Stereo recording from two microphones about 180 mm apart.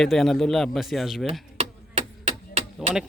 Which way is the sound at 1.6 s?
35° right (ahead or behind).